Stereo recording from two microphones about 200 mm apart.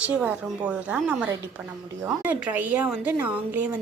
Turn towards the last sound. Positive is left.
turn(degrees=-5)  # may be behind; listen again after turning